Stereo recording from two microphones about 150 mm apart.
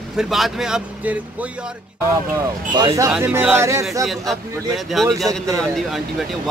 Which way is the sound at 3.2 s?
10° right (ahead or behind).